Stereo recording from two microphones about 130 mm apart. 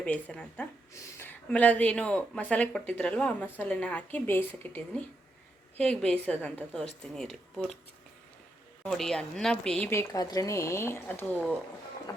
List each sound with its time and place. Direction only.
0.0 s a woman's voice: 10° left (ahead or behind)
8.9 s a woman's voice: 5° left (ahead or behind)
9.9 s a woman's voice: 25° left (ahead or behind)